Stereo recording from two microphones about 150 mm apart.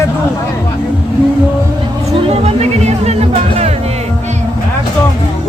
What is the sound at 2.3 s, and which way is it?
Speech, 45° right (ahead or behind).